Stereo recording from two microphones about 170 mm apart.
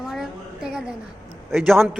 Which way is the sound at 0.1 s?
Centre (ahead or behind).